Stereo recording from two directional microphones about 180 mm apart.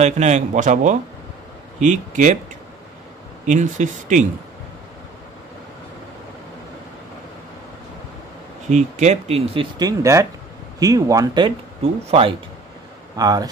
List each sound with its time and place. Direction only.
0.0 s a man's voice: 40° right (ahead or behind)
3.4 s a man's voice: 45° right (ahead or behind)
8.6 s speech: 40° right (ahead or behind); by 13.5 s 20° right (ahead or behind)